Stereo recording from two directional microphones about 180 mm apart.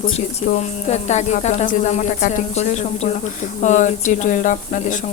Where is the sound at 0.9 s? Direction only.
40° left (ahead or behind).